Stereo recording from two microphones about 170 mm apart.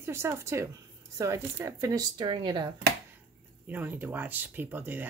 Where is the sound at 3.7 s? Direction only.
10° right (ahead or behind).